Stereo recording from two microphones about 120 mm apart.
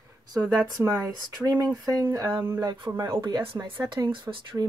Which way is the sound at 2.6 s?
40° right (ahead or behind).